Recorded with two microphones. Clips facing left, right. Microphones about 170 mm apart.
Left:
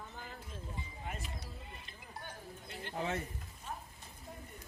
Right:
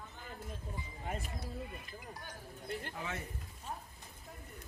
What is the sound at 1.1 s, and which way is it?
Speech, 45° right (ahead or behind).